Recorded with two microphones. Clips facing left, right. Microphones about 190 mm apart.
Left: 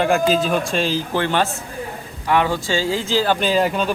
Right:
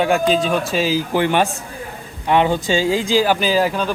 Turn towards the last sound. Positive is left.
turn(degrees=-5)  # may be behind; listen again after turning